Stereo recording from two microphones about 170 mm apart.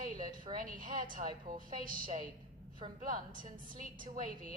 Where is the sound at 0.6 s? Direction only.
55° right (ahead or behind).